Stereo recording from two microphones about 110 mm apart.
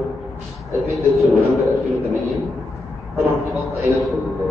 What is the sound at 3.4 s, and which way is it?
Speech, centre (ahead or behind).